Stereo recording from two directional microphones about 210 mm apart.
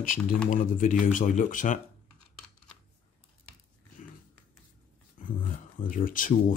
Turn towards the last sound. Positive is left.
turn(degrees=40)  # may be behind; listen again after turning